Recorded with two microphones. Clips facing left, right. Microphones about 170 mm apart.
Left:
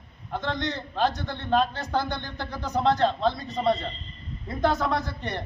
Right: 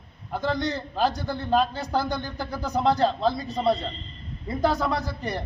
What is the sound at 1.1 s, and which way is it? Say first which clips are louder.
Speech: right 3 dB; 35° right (ahead or behind).